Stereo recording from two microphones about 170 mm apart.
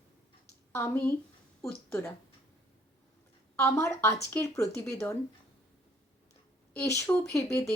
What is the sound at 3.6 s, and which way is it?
Speech, 15° left (ahead or behind).